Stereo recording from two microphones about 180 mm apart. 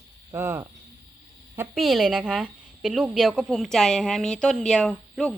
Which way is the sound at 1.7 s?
Centre (ahead or behind).